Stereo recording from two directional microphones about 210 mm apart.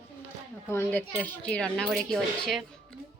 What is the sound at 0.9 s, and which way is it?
Speech, 10° left (ahead or behind).